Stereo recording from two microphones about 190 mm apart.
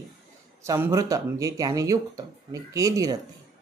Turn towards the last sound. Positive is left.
turn(degrees=-15)  # may be behind; listen again after turning